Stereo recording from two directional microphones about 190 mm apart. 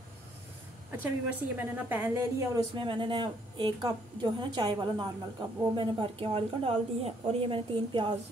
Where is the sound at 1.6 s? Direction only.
10° right (ahead or behind).